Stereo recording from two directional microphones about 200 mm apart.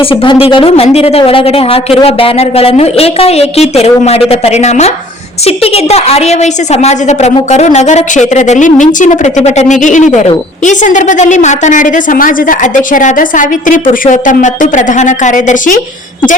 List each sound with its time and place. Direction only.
0.0 s a woman's voice: 25° left (ahead or behind)